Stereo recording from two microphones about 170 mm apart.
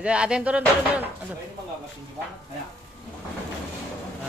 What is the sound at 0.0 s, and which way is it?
Speech, 5° right (ahead or behind).